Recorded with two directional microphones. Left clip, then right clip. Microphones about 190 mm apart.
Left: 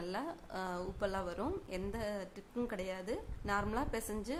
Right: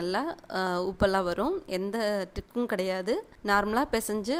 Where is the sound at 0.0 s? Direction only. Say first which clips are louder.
Right 11 dB; 40° right (ahead or behind).